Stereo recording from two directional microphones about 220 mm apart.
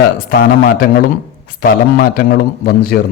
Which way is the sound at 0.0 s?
40° left (ahead or behind).